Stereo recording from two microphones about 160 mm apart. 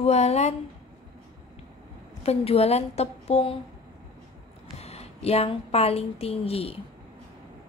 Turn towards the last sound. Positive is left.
turn(degrees=35)  # may be behind; listen again after turning